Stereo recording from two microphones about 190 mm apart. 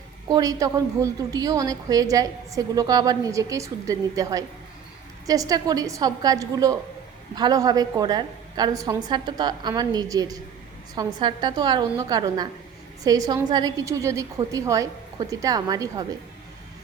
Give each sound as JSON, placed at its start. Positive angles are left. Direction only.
{"t": 0.3, "sound": "a woman's voice", "side_deg": -20}